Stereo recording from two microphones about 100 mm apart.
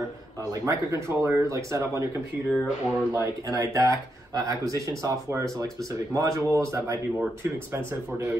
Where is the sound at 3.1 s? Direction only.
35° right (ahead or behind).